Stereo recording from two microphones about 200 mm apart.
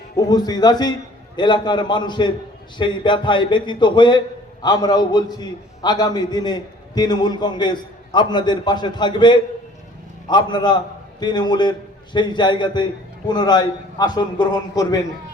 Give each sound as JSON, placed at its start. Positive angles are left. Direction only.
{"t": 0.2, "sound": "a man's voice", "side_deg": 20}